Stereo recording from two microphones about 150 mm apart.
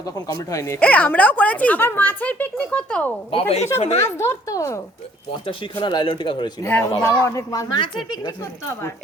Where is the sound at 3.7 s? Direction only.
45° left (ahead or behind).